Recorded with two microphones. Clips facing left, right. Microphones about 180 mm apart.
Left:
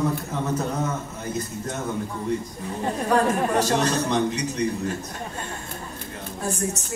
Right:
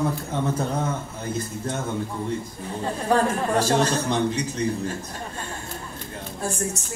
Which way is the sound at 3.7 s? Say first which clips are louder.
Even; 30° right (ahead or behind).